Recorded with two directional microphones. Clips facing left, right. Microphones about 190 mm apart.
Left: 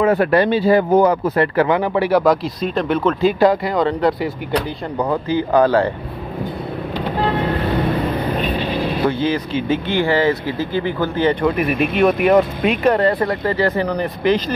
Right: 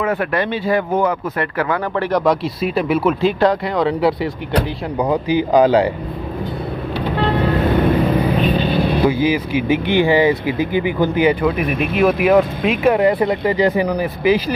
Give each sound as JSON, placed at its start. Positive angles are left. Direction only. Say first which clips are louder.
{"t": 0.0, "sound": "speech", "louder": "left 5 dB", "side_deg": 35}
{"t": 2.0, "sound": "speech", "louder": "left 1 dB", "side_deg": 5}
{"t": 2.6, "sound": "speech", "louder": "right 3 dB", "side_deg": -5}
{"t": 4.9, "sound": "speech", "louder": "right 2 dB", "side_deg": -15}
{"t": 8.6, "sound": "speech", "louder": "right 3 dB", "side_deg": -10}
{"t": 11.4, "sound": "speech", "louder": "left 1 dB", "side_deg": 0}